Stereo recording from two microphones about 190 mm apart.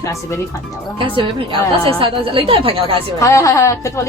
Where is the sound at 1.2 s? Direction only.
25° right (ahead or behind).